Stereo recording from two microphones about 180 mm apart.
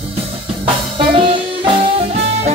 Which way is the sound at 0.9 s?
30° right (ahead or behind).